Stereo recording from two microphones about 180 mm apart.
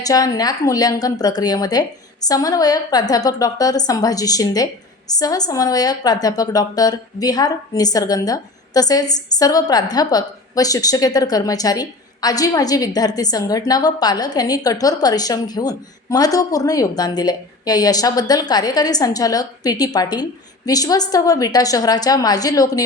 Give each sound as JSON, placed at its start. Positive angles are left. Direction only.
{"t": 0.0, "sound": "a woman's voice", "side_deg": 20}